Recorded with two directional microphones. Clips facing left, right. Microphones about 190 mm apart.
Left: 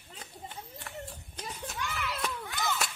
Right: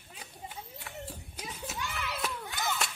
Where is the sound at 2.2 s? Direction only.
Centre (ahead or behind).